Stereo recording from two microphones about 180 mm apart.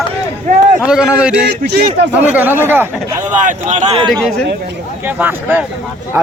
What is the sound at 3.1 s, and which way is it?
Speech, 45° right (ahead or behind).